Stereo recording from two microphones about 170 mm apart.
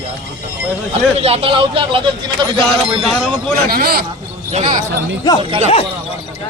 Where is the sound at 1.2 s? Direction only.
35° right (ahead or behind).